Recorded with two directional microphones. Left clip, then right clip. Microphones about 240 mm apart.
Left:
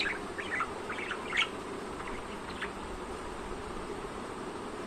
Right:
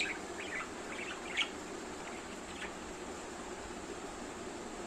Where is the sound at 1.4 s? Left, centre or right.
Centre.